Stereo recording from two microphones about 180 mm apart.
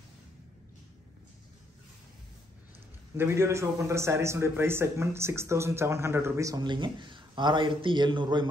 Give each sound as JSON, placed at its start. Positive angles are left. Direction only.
{"t": 3.2, "sound": "a man's voice", "side_deg": -15}